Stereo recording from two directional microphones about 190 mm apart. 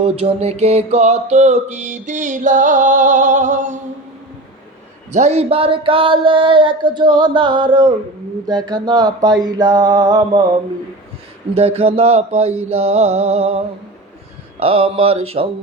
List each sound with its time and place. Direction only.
0.0 s music: 30° right (ahead or behind)
5.1 s a sound: 35° right (ahead or behind); by 10.4 s 20° right (ahead or behind)
11.5 s music: 30° right (ahead or behind)